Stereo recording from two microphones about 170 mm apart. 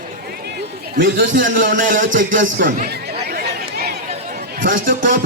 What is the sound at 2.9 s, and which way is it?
Chatter, 70° right (ahead or behind).